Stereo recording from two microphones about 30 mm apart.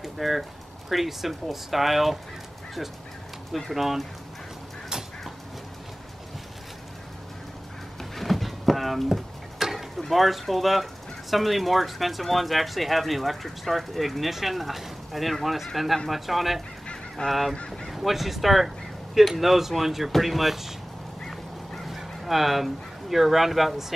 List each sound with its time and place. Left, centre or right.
0.0 s speech: centre
3.7 s speech: centre
8.0 s a sound: centre
9.9 s speech: centre
16.8 s goose: left
17.3 s speech: centre
21.8 s speech: centre